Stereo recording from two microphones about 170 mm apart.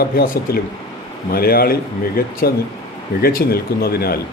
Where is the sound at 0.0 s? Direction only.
65° left (ahead or behind).